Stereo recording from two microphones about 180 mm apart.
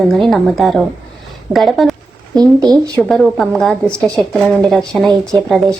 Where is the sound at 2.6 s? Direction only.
20° right (ahead or behind).